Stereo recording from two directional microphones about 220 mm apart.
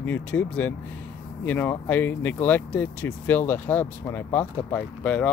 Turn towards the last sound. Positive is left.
turn(degrees=5)  # may be behind; listen again after turning